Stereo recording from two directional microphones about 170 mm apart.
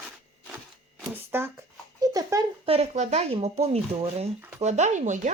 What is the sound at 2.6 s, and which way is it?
A woman's voice, 35° right (ahead or behind).